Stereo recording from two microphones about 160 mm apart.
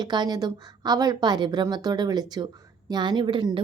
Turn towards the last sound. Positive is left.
turn(degrees=-30)  # may be behind; listen again after turning